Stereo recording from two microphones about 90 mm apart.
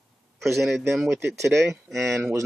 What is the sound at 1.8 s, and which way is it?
Speech, centre (ahead or behind).